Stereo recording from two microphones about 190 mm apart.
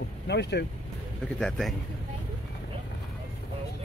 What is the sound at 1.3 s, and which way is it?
Speech, centre (ahead or behind).